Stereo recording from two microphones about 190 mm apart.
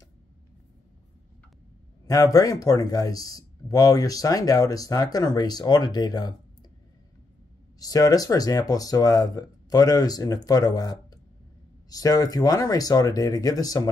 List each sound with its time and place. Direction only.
2.0 s a man's voice: 20° left (ahead or behind)
7.8 s a man's voice: 20° left (ahead or behind)